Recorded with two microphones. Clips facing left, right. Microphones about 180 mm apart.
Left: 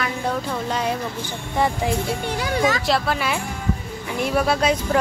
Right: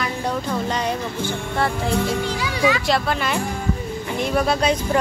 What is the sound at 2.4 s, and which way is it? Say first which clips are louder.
Speech: left 2 dB; 50° left (ahead or behind).